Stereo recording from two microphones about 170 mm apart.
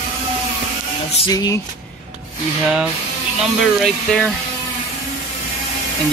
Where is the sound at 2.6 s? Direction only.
5° right (ahead or behind).